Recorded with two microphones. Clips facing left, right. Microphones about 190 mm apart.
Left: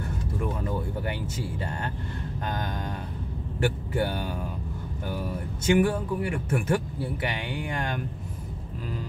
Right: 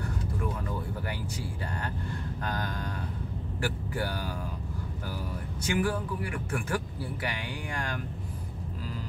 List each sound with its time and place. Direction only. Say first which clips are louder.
0.7 s a sound: left 5 dB; 25° left (ahead or behind)
2.4 s a man's voice: left 3 dB; 20° left (ahead or behind)
5.6 s a man's voice: left 7 dB; 25° left (ahead or behind)